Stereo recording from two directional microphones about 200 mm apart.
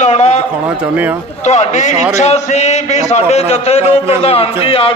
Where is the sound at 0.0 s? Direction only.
35° left (ahead or behind).